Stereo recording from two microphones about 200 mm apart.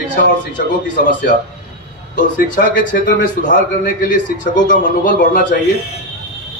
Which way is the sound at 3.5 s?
45° left (ahead or behind).